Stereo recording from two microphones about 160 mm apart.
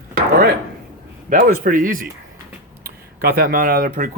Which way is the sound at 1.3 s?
55° right (ahead or behind).